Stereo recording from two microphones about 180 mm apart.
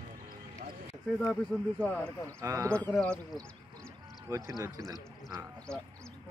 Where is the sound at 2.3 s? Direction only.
15° right (ahead or behind).